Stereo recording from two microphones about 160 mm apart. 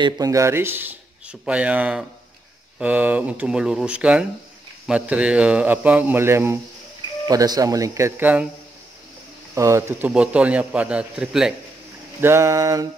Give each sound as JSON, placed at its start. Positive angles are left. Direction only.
{"t": 0.0, "sound": "speech", "side_deg": -20}
{"t": 9.6, "sound": "speech", "side_deg": -15}
{"t": 12.2, "sound": "speech", "side_deg": -15}